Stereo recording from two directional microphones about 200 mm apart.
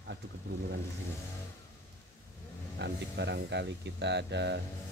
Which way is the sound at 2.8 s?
60° right (ahead or behind).